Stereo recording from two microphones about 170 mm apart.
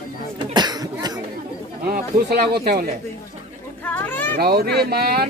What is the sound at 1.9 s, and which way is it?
Speech, 65° right (ahead or behind).